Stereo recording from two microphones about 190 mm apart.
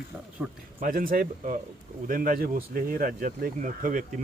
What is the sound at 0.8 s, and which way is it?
Speech, 50° right (ahead or behind).